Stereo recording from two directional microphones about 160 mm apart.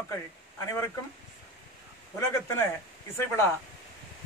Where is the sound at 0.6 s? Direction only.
15° left (ahead or behind).